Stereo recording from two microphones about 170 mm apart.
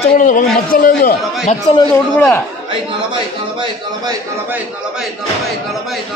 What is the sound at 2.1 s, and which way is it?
Speech, 15° left (ahead or behind).